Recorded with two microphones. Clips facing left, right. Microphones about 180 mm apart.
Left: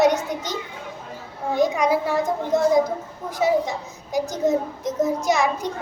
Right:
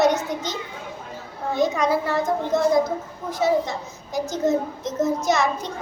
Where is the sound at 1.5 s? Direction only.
15° left (ahead or behind).